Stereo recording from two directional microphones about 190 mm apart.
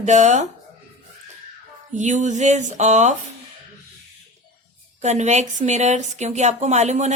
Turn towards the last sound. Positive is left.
turn(degrees=-35)  # may be behind; listen again after turning